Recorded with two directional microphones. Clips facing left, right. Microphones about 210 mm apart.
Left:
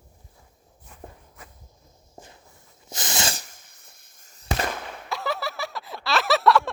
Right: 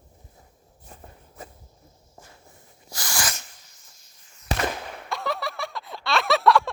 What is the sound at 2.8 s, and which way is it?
Sneeze, 20° left (ahead or behind).